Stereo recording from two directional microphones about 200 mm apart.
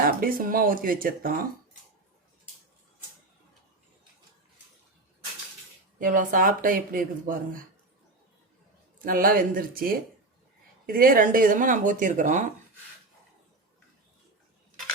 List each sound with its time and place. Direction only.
0.0 s speech: 45° right (ahead or behind)
6.0 s speech: 40° right (ahead or behind)
9.0 s speech: 45° right (ahead or behind)